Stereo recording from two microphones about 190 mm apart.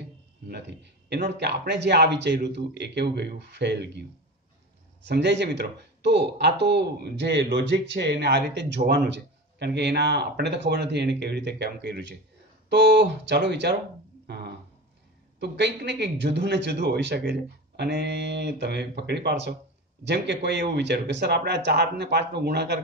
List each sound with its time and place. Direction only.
0.5 s speech: 65° right (ahead or behind)
5.0 s speech: 65° right (ahead or behind)
14.2 s a sound: 60° right (ahead or behind)
15.3 s speech: 65° right (ahead or behind)